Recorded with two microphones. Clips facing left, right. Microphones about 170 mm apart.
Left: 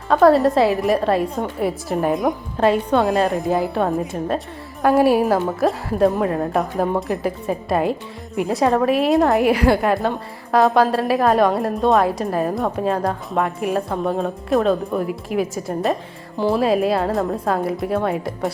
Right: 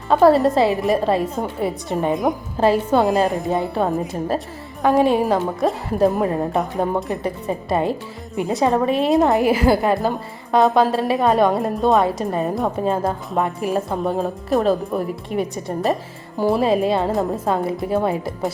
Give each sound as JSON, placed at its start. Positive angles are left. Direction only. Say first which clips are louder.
{"t": 0.1, "sound": "a woman's voice", "louder": "even", "side_deg": 0}